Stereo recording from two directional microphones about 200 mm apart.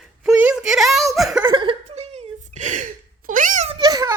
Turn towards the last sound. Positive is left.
turn(degrees=-20)  # may be behind; listen again after turning